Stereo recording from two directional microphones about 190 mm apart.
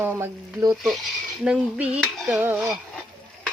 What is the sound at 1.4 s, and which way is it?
Speech, 5° right (ahead or behind).